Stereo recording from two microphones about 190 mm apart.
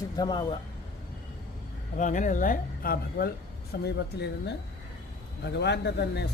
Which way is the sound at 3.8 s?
60° left (ahead or behind).